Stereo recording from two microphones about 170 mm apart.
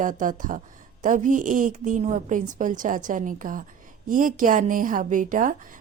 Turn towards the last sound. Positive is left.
turn(degrees=-50)  # may be behind; listen again after turning